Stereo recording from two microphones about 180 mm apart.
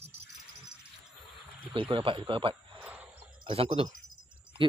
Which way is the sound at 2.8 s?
10° right (ahead or behind).